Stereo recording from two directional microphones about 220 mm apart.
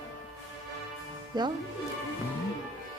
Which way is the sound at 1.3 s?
20° right (ahead or behind).